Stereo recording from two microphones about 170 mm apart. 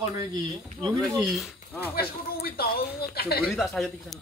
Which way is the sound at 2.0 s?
65° left (ahead or behind).